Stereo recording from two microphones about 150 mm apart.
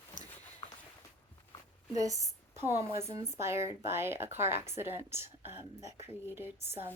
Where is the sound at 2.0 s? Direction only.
25° right (ahead or behind).